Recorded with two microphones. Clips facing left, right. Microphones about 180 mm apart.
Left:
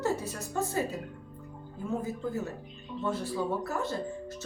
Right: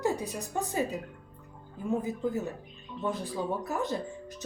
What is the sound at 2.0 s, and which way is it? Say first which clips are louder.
Speech: right 2 dB; 15° right (ahead or behind).